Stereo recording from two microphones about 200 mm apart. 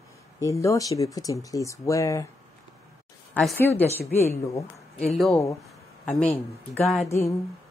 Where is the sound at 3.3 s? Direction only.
10° left (ahead or behind).